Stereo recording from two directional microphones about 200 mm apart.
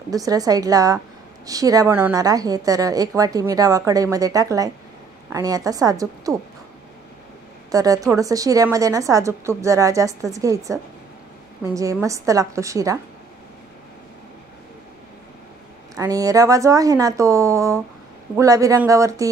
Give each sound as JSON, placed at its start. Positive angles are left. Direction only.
{"t": 0.1, "sound": "a woman's voice", "side_deg": -20}
{"t": 7.7, "sound": "a woman's voice", "side_deg": -15}
{"t": 15.9, "sound": "a woman's voice", "side_deg": -15}